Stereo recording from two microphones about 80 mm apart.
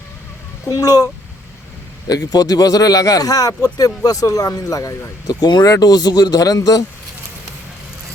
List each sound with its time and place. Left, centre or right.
0.7 s speech: left